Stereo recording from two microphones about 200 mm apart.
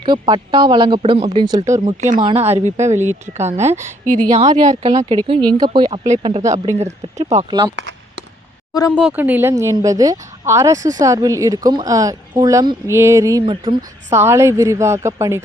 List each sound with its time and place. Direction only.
0.0 s speech: 20° right (ahead or behind)
1.6 s speech: 35° right (ahead or behind)
4.8 s speech: 20° right (ahead or behind)
7.8 s chop: 60° right (ahead or behind)
9.0 s speech: 5° right (ahead or behind); by 13.7 s 25° right (ahead or behind)
14.1 s speech: 10° right (ahead or behind)